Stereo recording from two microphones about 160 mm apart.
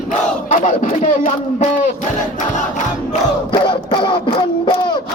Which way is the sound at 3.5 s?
30° left (ahead or behind).